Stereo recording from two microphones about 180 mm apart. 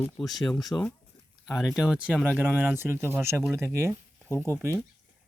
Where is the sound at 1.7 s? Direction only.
5° right (ahead or behind).